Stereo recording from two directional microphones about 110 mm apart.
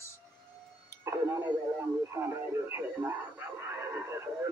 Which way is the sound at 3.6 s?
25° right (ahead or behind).